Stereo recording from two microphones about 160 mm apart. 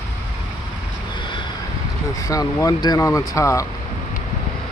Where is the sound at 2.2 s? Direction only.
20° left (ahead or behind).